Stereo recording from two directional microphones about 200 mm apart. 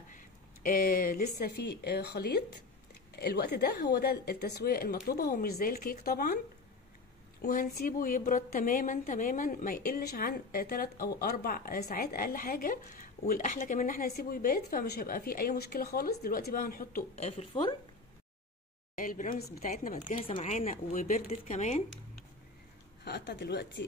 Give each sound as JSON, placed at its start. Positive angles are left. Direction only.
{"t": 0.1, "sound": "speech", "side_deg": 45}
{"t": 7.4, "sound": "speech", "side_deg": 45}
{"t": 17.1, "sound": "speech", "side_deg": 30}
{"t": 19.0, "sound": "speech", "side_deg": 45}
{"t": 23.0, "sound": "speech", "side_deg": 55}